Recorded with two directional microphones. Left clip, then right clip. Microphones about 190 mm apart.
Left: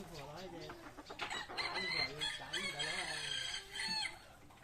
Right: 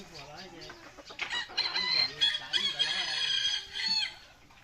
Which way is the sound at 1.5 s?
65° left (ahead or behind).